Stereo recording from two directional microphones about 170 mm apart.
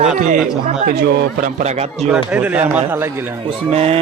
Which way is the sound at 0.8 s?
70° right (ahead or behind).